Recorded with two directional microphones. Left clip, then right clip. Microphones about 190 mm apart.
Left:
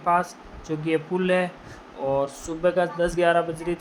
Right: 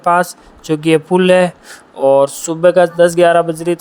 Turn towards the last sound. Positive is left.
turn(degrees=-45)  # may be behind; listen again after turning